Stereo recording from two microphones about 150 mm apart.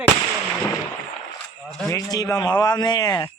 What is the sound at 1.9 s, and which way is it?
Speech, 25° left (ahead or behind).